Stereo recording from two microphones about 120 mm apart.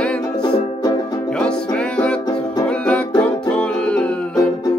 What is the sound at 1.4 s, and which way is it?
Music, 10° left (ahead or behind).